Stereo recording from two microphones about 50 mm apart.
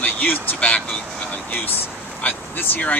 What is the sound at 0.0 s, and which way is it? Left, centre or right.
Speech, left.